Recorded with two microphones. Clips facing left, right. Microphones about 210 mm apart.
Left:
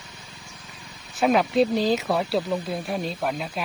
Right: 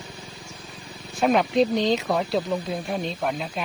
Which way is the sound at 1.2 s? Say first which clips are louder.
Even; centre (ahead or behind).